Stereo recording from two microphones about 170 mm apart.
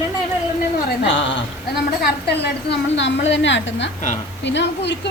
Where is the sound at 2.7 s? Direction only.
90° left.